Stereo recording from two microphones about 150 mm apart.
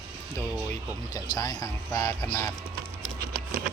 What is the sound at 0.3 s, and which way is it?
Speech, 20° left (ahead or behind).